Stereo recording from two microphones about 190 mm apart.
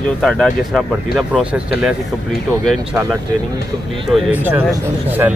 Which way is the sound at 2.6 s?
Centre (ahead or behind).